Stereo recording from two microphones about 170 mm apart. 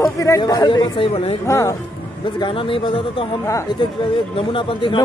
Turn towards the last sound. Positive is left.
turn(degrees=30)  # may be behind; listen again after turning